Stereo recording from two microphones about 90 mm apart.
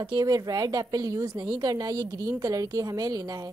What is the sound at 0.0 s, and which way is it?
Speech, 60° right (ahead or behind).